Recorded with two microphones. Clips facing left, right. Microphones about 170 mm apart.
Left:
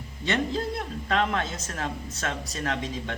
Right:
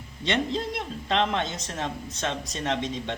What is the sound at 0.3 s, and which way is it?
Speech, 20° right (ahead or behind).